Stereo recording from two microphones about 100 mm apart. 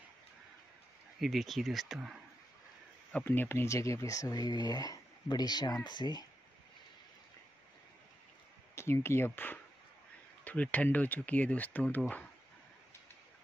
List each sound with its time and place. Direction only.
1.2 s speech: centre (ahead or behind)
3.3 s speech: 20° left (ahead or behind); by 6.2 s 50° left (ahead or behind)
8.7 s speech: 25° left (ahead or behind)